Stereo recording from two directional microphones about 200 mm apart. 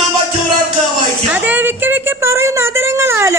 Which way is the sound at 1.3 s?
10° right (ahead or behind).